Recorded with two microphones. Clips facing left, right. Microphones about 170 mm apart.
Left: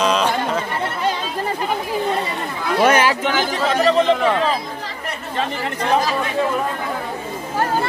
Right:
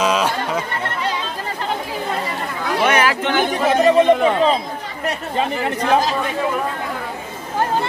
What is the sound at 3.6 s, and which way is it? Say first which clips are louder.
Speech: right 3 dB; 15° right (ahead or behind).